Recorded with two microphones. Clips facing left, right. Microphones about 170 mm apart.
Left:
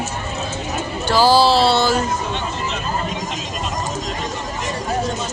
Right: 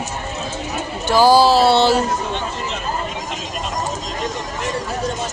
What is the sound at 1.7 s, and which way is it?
Speech, 25° right (ahead or behind).